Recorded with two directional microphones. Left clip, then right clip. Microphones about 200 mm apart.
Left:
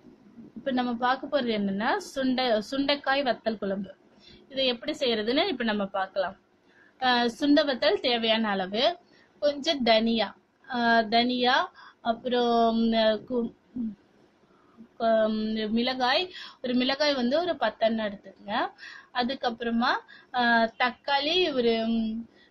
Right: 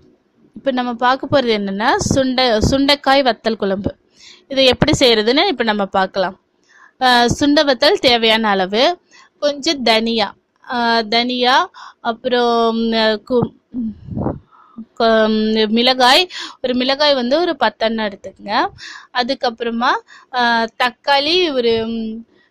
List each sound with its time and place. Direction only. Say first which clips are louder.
0.7 s a woman's voice: right 11 dB; 50° right (ahead or behind)
15.0 s a woman's voice: right 11 dB; 55° right (ahead or behind)